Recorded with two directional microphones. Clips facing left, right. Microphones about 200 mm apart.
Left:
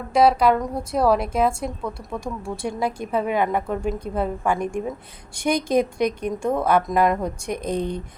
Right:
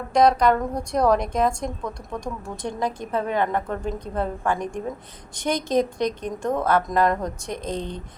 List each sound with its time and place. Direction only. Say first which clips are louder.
0.1 s a woman's voice: left 1 dB; 5° left (ahead or behind)